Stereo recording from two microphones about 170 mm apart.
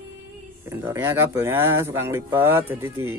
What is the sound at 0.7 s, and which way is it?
Speech, 15° right (ahead or behind).